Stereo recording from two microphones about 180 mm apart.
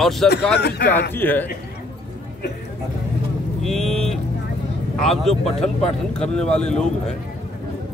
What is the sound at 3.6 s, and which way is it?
Speech, centre (ahead or behind).